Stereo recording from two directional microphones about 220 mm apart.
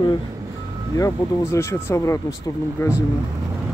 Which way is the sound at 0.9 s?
15° left (ahead or behind).